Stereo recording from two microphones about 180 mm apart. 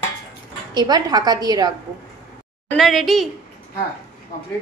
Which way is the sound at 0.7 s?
20° right (ahead or behind).